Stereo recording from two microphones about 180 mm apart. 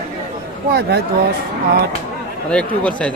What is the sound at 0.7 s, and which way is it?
Speech, 65° right (ahead or behind).